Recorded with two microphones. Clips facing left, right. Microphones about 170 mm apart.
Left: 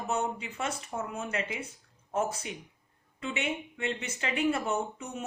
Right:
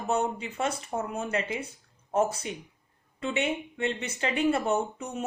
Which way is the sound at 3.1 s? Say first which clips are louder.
Right 4 dB; 30° right (ahead or behind).